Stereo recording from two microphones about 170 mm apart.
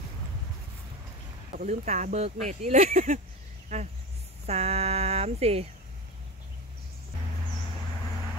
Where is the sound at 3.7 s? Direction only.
40° right (ahead or behind).